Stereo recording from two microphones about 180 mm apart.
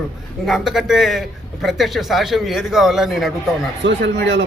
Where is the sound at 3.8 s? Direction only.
80° right.